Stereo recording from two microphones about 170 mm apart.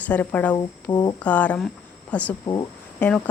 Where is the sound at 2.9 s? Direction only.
5° left (ahead or behind).